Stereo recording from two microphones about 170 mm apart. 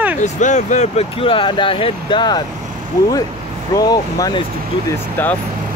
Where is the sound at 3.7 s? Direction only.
20° left (ahead or behind).